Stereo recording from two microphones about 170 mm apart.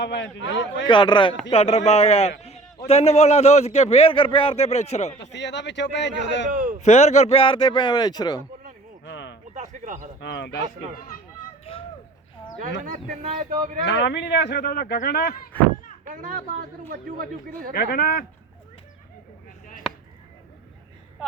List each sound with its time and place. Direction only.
0.0 s a man's voice: 90° left
0.9 s a man's voice: 30° left (ahead or behind)
5.2 s a man's voice: 90° left
6.5 s speech: 55° right (ahead or behind)
6.8 s a man's voice: 40° left (ahead or behind); by 8.4 s 25° left (ahead or behind)
9.0 s a sound: 90° left
9.6 s speech: 45° right (ahead or behind)
10.2 s a man's voice: 90° left
12.8 s speech: 50° right (ahead or behind)
13.8 s speech: 90° left; by 15.4 s 65° left (ahead or behind)
16.6 s speech: 55° right (ahead or behind)
17.7 s speech: 60° left (ahead or behind)